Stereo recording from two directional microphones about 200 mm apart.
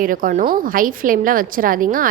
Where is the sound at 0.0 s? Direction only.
45° right (ahead or behind).